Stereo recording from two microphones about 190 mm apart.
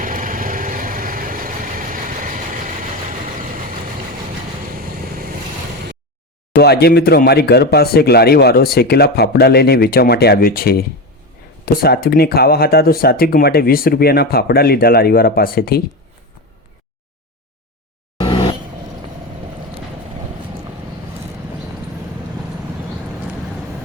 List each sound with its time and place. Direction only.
0.0 s vehicle: 45° right (ahead or behind)
6.5 s speech: 60° left (ahead or behind)
18.2 s vehicle: 25° left (ahead or behind)